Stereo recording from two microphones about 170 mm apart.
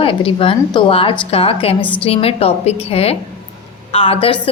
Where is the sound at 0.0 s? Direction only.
35° left (ahead or behind).